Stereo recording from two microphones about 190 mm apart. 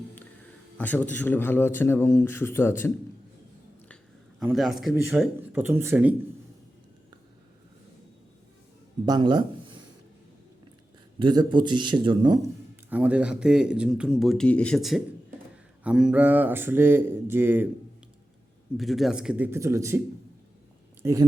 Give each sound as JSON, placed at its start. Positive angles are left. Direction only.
{"t": 0.8, "sound": "speech", "side_deg": 10}
{"t": 4.4, "sound": "speech", "side_deg": 0}
{"t": 9.0, "sound": "speech", "side_deg": -20}
{"t": 11.2, "sound": "speech", "side_deg": -25}
{"t": 12.9, "sound": "speech", "side_deg": -10}
{"t": 18.8, "sound": "speech", "side_deg": 0}
{"t": 21.0, "sound": "speech", "side_deg": -15}